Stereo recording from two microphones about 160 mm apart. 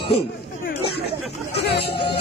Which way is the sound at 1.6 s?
90° left.